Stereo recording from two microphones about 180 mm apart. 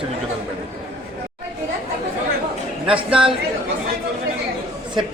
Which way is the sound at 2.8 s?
30° right (ahead or behind).